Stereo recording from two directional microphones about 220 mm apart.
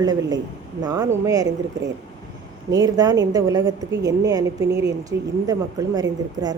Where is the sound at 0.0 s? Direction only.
15° right (ahead or behind).